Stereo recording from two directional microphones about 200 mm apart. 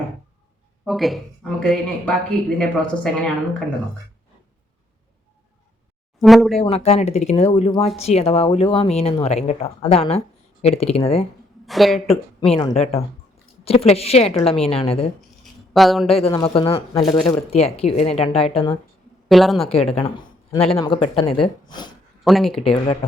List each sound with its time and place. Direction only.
0.9 s speech: centre (ahead or behind)
6.1 s speech: centre (ahead or behind)
6.6 s speech: 30° left (ahead or behind)
11.6 s speech: centre (ahead or behind)
12.0 s speech: 30° left (ahead or behind)
15.7 s speech: centre (ahead or behind)
16.0 s speech: 30° left (ahead or behind)
19.3 s speech: centre (ahead or behind)
20.5 s speech: 30° left (ahead or behind)
22.2 s speech: centre (ahead or behind)
22.6 s speech: 30° left (ahead or behind)